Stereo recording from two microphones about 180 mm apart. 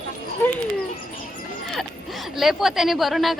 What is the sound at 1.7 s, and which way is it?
Speech, centre (ahead or behind).